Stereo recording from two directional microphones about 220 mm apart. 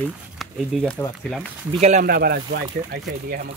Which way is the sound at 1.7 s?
30° right (ahead or behind).